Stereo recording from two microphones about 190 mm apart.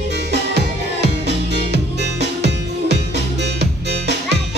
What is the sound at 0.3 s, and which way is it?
Music, 60° right (ahead or behind).